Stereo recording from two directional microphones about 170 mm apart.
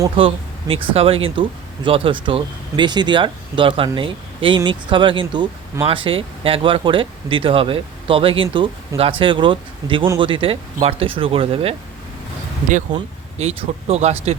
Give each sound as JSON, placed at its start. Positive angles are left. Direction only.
{"t": 0.2, "sound": "speech", "side_deg": -30}
{"t": 13.4, "sound": "speech", "side_deg": -35}